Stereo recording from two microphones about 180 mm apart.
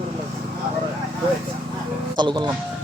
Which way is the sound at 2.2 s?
25° right (ahead or behind).